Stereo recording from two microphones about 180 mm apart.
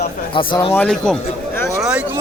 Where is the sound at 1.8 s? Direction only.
5° right (ahead or behind).